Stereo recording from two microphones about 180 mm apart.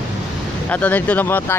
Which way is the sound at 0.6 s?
10° left (ahead or behind).